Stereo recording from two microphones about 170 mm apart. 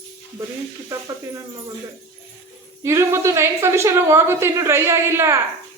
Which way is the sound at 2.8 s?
15° right (ahead or behind).